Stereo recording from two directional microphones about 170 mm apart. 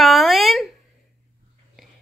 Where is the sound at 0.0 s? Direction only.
Centre (ahead or behind).